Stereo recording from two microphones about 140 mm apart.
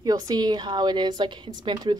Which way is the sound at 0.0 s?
30° right (ahead or behind).